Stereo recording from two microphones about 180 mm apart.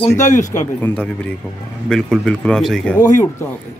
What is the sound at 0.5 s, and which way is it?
Speech, 15° left (ahead or behind).